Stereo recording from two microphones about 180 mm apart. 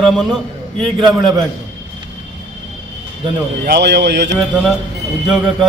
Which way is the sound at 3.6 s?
65° right (ahead or behind).